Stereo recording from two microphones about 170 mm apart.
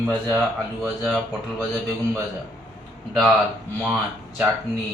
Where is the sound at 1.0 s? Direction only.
Centre (ahead or behind).